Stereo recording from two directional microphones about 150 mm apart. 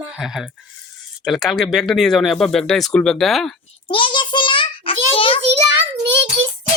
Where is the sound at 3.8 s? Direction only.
30° left (ahead or behind).